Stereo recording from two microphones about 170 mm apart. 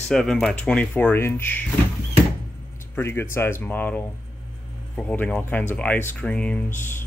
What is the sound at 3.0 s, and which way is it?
Speech, 15° left (ahead or behind).